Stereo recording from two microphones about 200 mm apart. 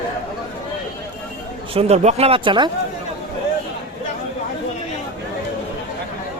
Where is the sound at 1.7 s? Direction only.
30° right (ahead or behind).